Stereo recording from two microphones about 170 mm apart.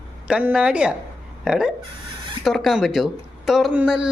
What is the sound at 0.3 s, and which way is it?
Speech, 5° right (ahead or behind).